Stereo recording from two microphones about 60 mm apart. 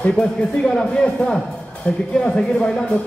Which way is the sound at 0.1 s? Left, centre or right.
Centre.